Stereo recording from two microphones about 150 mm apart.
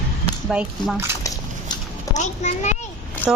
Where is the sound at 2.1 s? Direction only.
50° left (ahead or behind).